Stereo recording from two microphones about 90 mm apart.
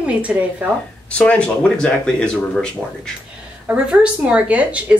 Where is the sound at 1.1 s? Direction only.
10° left (ahead or behind).